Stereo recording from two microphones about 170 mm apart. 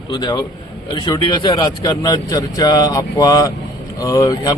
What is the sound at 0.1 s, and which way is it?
A man's voice, 25° left (ahead or behind).